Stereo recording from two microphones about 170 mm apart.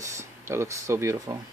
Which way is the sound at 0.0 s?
15° right (ahead or behind).